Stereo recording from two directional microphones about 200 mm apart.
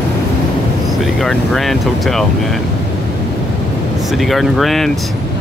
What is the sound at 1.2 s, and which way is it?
Speech, centre (ahead or behind).